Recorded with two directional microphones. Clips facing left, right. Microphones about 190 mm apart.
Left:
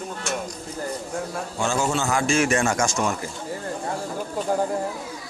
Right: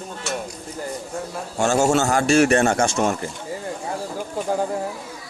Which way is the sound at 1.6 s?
45° right (ahead or behind).